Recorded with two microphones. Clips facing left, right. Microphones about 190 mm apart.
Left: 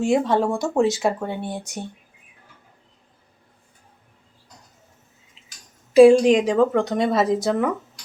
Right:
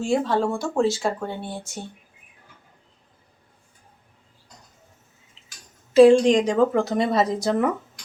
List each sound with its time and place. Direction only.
0.0 s speech: 20° left (ahead or behind)
5.9 s a woman's voice: 10° left (ahead or behind)